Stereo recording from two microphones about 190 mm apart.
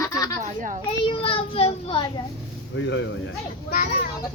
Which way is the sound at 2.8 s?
70° left (ahead or behind).